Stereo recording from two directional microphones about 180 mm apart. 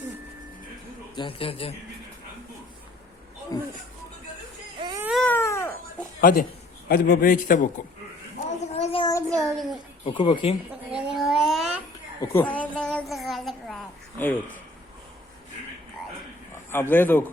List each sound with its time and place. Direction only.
1.1 s a man's voice: 30° left (ahead or behind)
3.5 s speech: 20° left (ahead or behind)
5.1 s baby cry: 10° left (ahead or behind)
6.1 s a man's voice: 50° left (ahead or behind)
8.7 s a sound: 35° left (ahead or behind)
9.3 s a child's voice: centre (ahead or behind)
10.1 s speech: 25° left (ahead or behind)
10.9 s a sound: 5° right (ahead or behind)
12.2 s a sound: 10° left (ahead or behind)
16.7 s a man's voice: 10° left (ahead or behind)